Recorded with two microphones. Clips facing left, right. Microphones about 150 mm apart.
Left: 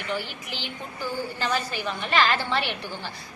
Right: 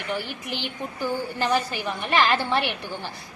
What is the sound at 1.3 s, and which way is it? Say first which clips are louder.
A woman's voice: right 5 dB; 15° right (ahead or behind).